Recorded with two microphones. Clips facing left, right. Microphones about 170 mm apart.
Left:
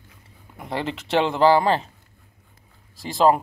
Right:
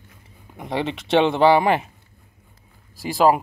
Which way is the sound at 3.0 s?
5° right (ahead or behind).